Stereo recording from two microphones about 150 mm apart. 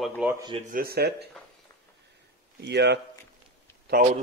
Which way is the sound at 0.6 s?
80° right.